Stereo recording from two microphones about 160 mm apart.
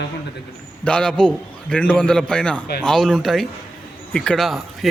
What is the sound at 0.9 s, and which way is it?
A man's voice, 5° left (ahead or behind).